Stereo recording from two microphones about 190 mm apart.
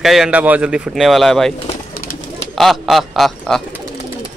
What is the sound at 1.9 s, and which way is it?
Bird, 45° left (ahead or behind).